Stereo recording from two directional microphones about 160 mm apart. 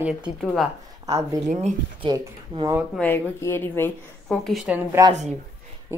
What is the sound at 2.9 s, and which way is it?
A woman's voice, 10° left (ahead or behind).